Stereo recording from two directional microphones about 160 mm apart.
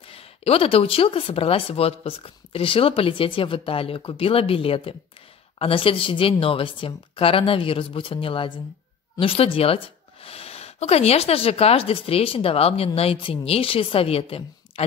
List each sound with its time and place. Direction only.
0.1 s speech: 35° left (ahead or behind)